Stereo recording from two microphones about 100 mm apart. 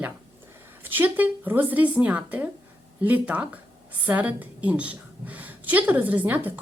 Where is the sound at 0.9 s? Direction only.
20° right (ahead or behind).